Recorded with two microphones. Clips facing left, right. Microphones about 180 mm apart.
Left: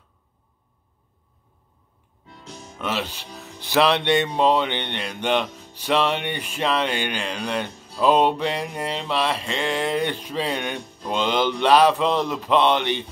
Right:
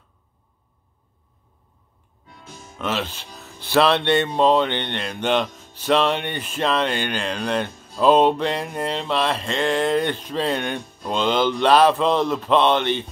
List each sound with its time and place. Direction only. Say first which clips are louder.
2.8 s speech: right 2 dB; 10° left (ahead or behind)
9.6 s speech: right 5 dB; 45° right (ahead or behind)
9.8 s speech: right 3 dB; 10° left (ahead or behind)